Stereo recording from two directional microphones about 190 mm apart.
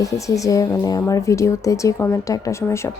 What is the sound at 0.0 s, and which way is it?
Speech, 15° left (ahead or behind).